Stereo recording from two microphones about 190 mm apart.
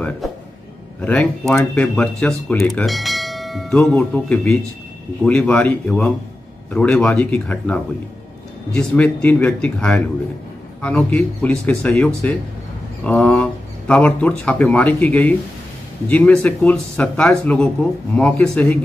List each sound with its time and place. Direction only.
1.0 s speech: 5° left (ahead or behind)